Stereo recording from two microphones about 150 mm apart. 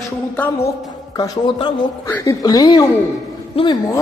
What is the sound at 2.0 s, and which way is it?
Speech, 20° left (ahead or behind).